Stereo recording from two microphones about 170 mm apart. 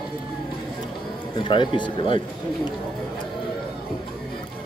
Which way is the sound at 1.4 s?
30° left (ahead or behind).